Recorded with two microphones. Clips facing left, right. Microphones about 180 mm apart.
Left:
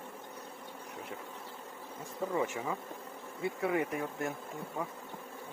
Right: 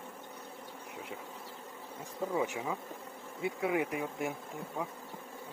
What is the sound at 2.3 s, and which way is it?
Speech, 10° right (ahead or behind).